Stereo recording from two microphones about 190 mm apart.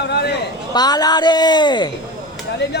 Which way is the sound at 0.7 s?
20° left (ahead or behind).